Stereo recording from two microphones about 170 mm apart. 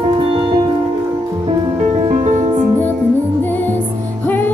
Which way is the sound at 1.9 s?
40° right (ahead or behind).